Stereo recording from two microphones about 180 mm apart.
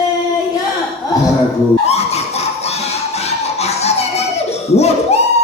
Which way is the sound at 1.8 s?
35° left (ahead or behind).